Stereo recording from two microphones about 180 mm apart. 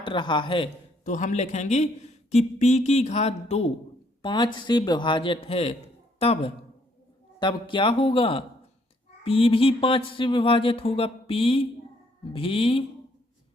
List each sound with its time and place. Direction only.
0.0 s a man's voice: 25° left (ahead or behind)
1.0 s a man's voice: 45° left (ahead or behind)